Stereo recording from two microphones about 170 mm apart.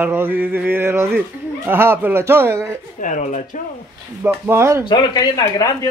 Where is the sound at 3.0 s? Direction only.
45° left (ahead or behind).